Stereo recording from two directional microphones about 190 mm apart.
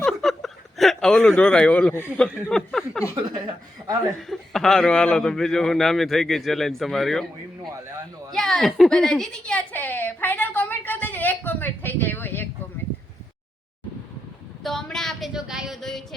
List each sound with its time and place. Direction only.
0.0 s a sound: centre (ahead or behind)
2.3 s speech: centre (ahead or behind)
3.2 s a woman's voice: 20° right (ahead or behind)
4.3 s speech: centre (ahead or behind)
8.3 s a sound: centre (ahead or behind)
14.6 s speech: centre (ahead or behind)